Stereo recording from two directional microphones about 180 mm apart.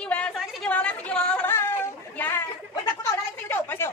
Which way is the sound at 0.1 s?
5° left (ahead or behind).